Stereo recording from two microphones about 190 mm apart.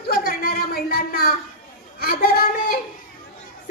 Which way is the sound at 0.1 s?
55° left (ahead or behind).